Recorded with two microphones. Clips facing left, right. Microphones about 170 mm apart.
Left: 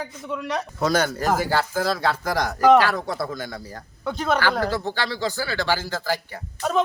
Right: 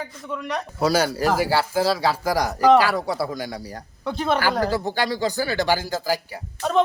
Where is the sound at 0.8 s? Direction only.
10° right (ahead or behind).